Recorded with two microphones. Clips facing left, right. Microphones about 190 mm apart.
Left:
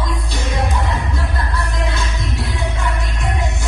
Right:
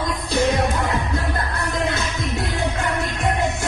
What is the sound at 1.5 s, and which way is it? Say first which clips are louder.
Music: right 1 dB; 55° right (ahead or behind).